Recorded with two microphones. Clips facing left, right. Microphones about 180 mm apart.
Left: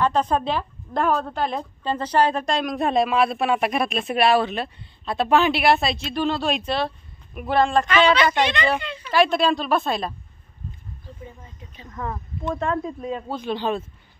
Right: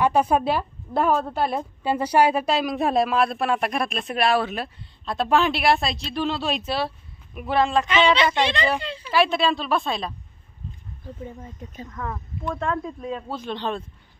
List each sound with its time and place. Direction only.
0.0 s a woman's voice: 10° right (ahead or behind)
7.9 s a woman's voice: 25° right (ahead or behind)
9.1 s a woman's voice: centre (ahead or behind)
11.9 s speech: 15° left (ahead or behind)
12.5 s a woman's voice: 5° left (ahead or behind)